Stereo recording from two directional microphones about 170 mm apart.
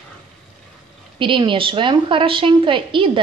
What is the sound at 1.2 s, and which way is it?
A woman's voice, 30° right (ahead or behind).